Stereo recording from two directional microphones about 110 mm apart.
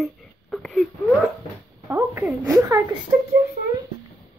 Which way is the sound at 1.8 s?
20° right (ahead or behind).